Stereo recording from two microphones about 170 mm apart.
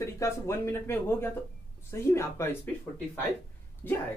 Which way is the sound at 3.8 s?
10° left (ahead or behind).